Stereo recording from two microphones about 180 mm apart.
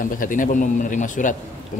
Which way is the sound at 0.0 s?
50° left (ahead or behind).